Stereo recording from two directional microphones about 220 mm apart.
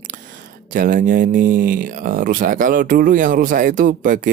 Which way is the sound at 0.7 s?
40° right (ahead or behind).